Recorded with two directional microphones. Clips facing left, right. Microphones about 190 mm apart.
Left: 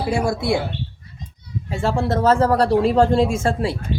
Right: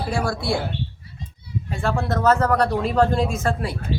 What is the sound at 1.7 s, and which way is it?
A woman's voice, 25° left (ahead or behind).